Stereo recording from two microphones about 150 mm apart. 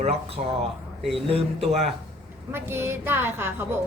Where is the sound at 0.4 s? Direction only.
60° right (ahead or behind).